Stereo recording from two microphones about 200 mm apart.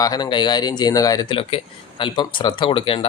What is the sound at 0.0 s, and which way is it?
Speech, 20° left (ahead or behind).